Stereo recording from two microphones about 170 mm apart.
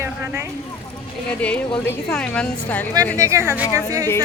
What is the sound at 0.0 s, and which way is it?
Vehicle, 15° right (ahead or behind).